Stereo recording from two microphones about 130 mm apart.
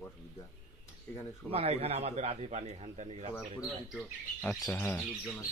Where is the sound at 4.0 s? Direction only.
15° left (ahead or behind).